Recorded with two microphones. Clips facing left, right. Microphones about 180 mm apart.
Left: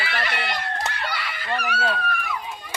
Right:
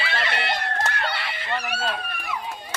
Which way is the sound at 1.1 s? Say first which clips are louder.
Left 1 dB; 25° right (ahead or behind).